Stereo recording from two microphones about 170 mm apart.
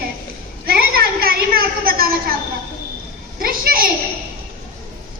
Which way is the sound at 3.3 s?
60° right (ahead or behind).